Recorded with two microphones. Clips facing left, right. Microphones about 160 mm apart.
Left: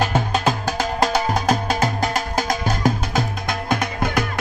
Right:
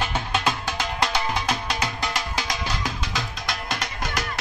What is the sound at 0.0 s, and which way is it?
Music, 40° left (ahead or behind).